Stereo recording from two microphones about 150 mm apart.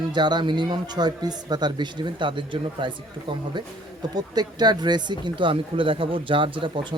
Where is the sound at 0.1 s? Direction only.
30° right (ahead or behind).